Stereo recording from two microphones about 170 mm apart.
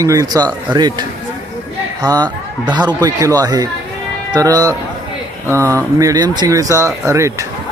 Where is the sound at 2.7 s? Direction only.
25° right (ahead or behind).